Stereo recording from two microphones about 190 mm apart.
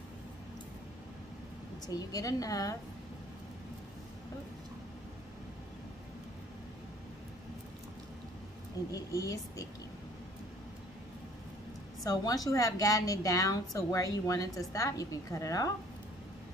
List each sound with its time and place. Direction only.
1.9 s a woman's voice: 20° left (ahead or behind)
8.9 s a woman's voice: 15° left (ahead or behind)
12.0 s a woman's voice: 20° left (ahead or behind)